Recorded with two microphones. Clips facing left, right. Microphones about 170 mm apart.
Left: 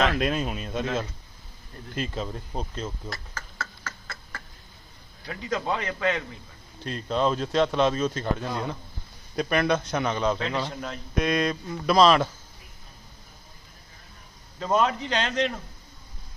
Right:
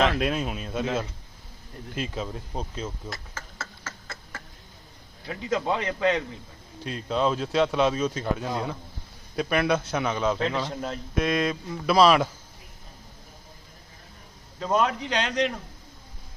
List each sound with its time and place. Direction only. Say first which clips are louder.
0.1 s speech: even; 5° right (ahead or behind)
3.1 s a sound: even; 25° right (ahead or behind)
5.2 s a man's voice: right 2 dB; 20° right (ahead or behind)
6.8 s speech: even; 5° right (ahead or behind)
10.7 s a man's voice: right 3 dB; 35° right (ahead or behind)
11.1 s speech: left 1 dB; centre (ahead or behind)
14.6 s speech: left 1 dB; 5° right (ahead or behind)